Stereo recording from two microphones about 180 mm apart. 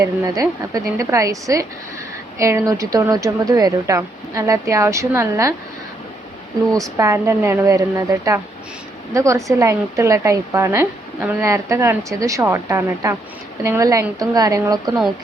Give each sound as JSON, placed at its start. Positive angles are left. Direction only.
{"t": 0.0, "sound": "a woman's voice", "side_deg": -20}
{"t": 6.7, "sound": "a woman's voice", "side_deg": -20}